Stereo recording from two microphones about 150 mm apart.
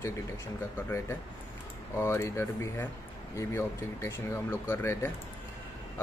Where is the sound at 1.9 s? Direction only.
15° left (ahead or behind).